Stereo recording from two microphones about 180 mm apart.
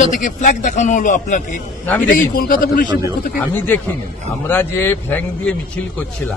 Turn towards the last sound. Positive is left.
turn(degrees=10)  # may be behind; listen again after turning